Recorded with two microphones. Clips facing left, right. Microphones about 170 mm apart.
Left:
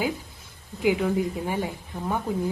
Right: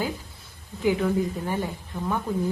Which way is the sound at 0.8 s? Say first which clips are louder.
Even; 10° left (ahead or behind).